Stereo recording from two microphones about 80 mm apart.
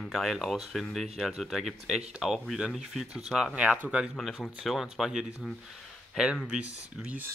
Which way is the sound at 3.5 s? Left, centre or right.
Centre.